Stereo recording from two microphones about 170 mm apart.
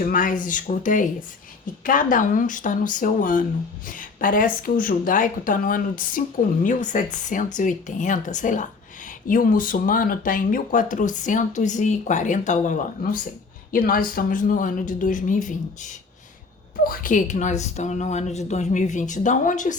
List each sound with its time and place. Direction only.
0.0 s a woman's voice: 55° left (ahead or behind)